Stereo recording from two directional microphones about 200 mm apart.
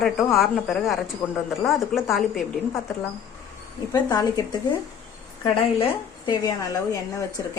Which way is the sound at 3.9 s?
20° left (ahead or behind).